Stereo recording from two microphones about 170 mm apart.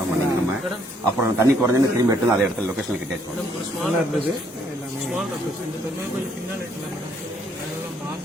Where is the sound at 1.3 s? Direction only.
15° right (ahead or behind).